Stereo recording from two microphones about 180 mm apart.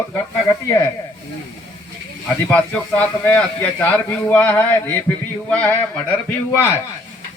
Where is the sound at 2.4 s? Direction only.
10° left (ahead or behind).